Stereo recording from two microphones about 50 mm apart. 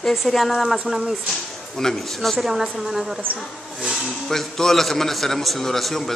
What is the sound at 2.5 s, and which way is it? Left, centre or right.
Speech, centre.